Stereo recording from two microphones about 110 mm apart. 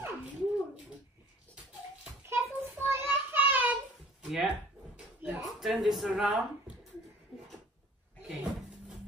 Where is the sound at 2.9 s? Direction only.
20° right (ahead or behind).